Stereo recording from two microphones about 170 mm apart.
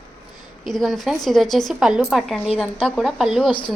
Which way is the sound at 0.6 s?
Centre (ahead or behind).